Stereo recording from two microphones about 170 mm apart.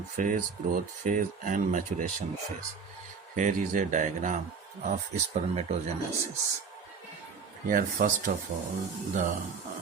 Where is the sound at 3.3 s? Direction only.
50° right (ahead or behind).